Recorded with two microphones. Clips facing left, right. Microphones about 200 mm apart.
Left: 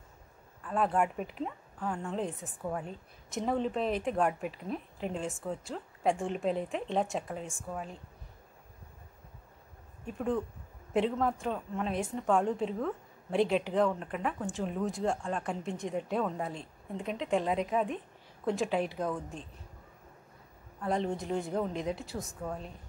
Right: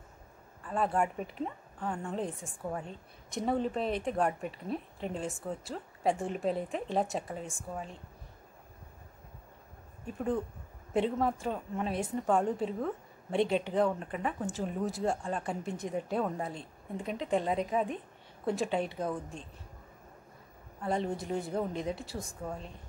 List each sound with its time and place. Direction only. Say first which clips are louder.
0.7 s a woman's voice: left 1 dB; centre (ahead or behind)
10.0 s a woman's voice: even; centre (ahead or behind)
20.8 s a woman's voice: left 1 dB; centre (ahead or behind)